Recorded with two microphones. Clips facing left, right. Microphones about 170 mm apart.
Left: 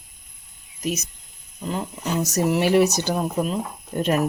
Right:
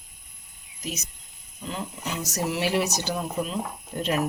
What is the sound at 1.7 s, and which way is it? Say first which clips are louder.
Speech: left 7 dB; 50° left (ahead or behind).